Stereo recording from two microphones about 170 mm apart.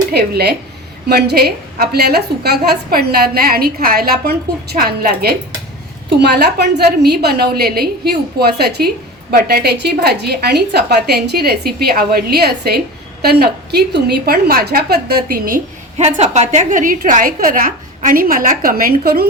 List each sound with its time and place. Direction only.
0.1 s a woman's voice: 70° right (ahead or behind)
6.1 s a woman's voice: 75° right (ahead or behind); by 15.6 s 60° right (ahead or behind)
16.0 s a woman's voice: 40° right (ahead or behind); by 19.3 s 65° right (ahead or behind)